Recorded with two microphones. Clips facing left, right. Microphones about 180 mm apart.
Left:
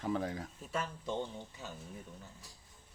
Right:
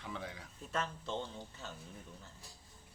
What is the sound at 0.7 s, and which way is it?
Speech, 10° left (ahead or behind).